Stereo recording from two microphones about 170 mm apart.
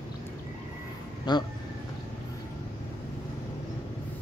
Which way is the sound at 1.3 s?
25° left (ahead or behind).